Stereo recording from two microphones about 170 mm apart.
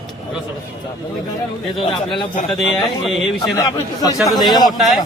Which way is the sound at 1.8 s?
30° left (ahead or behind).